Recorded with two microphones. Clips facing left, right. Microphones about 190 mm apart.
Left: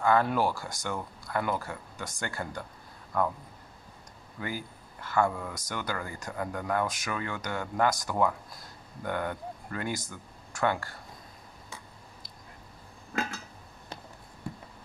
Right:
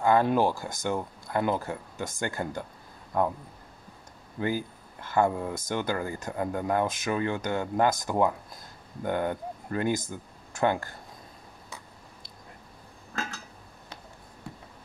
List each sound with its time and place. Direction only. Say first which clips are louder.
0.0 s speech: right 3 dB; 20° right (ahead or behind)
4.4 s speech: right 7 dB; 25° right (ahead or behind)